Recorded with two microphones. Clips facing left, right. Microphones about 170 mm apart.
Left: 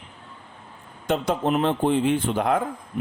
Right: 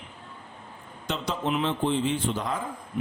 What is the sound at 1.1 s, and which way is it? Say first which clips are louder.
Speech: left 6 dB; 50° left (ahead or behind).